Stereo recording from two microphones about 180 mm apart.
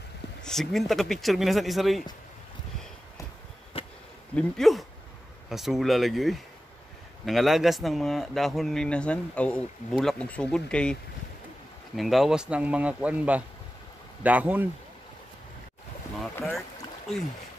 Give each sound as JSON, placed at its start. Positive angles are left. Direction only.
{"t": 0.4, "sound": "speech", "side_deg": 0}
{"t": 3.8, "sound": "insect", "side_deg": 30}
{"t": 4.4, "sound": "speech", "side_deg": 0}
{"t": 12.0, "sound": "speech", "side_deg": 0}